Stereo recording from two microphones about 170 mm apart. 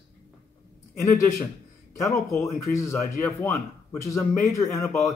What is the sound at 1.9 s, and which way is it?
Speech, 15° left (ahead or behind).